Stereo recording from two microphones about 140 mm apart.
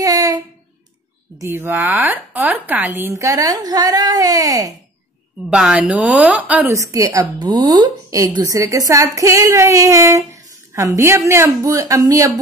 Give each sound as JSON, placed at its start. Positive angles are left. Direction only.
{"t": 0.0, "sound": "a sound", "side_deg": -25}
{"t": 1.4, "sound": "a woman's voice", "side_deg": -15}
{"t": 5.5, "sound": "speech", "side_deg": -5}
{"t": 6.7, "sound": "a woman's voice", "side_deg": -20}